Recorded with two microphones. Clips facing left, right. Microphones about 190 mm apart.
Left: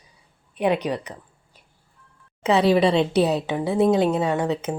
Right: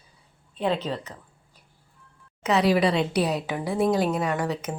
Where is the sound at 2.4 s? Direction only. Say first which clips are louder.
Left 3 dB; 30° left (ahead or behind).